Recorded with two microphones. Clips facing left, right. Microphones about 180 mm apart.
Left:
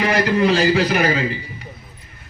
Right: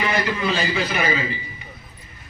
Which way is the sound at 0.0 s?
65° left (ahead or behind).